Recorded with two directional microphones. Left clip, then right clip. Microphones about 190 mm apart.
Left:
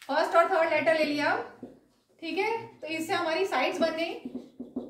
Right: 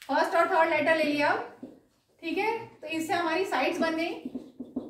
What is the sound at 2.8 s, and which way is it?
A woman's voice, 20° left (ahead or behind).